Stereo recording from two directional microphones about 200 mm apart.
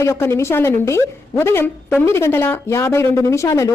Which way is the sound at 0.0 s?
15° left (ahead or behind).